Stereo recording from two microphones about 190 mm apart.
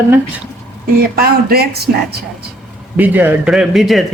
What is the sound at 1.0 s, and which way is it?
Speech, 55° right (ahead or behind).